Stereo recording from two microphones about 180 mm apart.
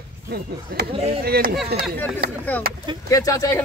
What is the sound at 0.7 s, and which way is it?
Speech, 60° right (ahead or behind).